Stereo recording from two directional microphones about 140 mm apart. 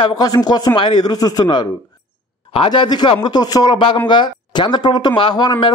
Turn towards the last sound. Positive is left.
turn(degrees=35)  # may be behind; listen again after turning